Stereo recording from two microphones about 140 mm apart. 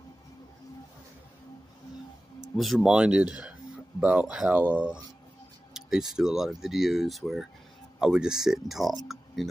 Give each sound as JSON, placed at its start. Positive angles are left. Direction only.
{"t": 2.5, "sound": "speech", "side_deg": 0}